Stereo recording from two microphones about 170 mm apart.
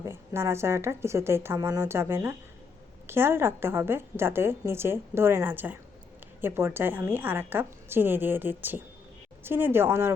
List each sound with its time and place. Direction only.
0.1 s a woman's voice: 15° right (ahead or behind)